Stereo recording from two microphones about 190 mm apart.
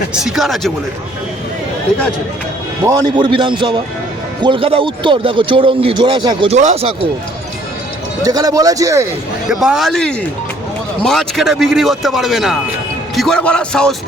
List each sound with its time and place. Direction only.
0.1 s speech: 5° right (ahead or behind)
2.8 s speech: 20° right (ahead or behind); by 6.9 s 35° right (ahead or behind)
8.2 s a man's voice: 20° right (ahead or behind)
9.5 s speech: centre (ahead or behind)